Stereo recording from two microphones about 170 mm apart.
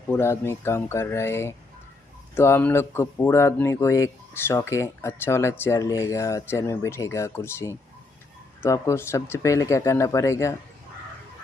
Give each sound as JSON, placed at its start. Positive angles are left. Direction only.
{"t": 0.1, "sound": "speech", "side_deg": 15}